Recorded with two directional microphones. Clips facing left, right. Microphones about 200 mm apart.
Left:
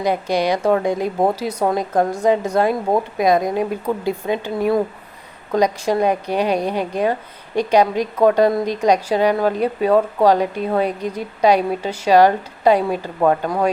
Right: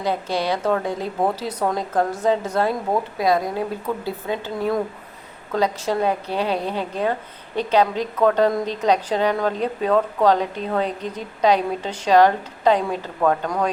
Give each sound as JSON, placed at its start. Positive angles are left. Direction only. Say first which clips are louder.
{"t": 0.0, "sound": "a woman's voice", "louder": "left 4 dB", "side_deg": 15}
{"t": 13.2, "sound": "speech", "louder": "left 3 dB", "side_deg": 30}